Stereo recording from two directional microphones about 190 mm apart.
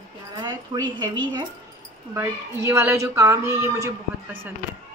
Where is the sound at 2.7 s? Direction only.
10° right (ahead or behind).